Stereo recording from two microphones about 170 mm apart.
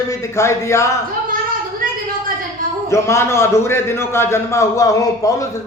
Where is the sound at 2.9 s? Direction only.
15° left (ahead or behind).